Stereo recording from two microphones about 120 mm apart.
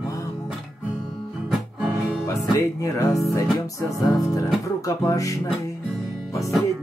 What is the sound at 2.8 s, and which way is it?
Music, 25° left (ahead or behind).